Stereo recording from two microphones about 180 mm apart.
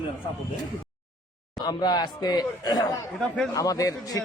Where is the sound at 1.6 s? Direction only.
25° left (ahead or behind).